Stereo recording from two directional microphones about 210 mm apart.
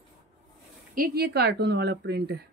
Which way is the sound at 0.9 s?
50° right (ahead or behind).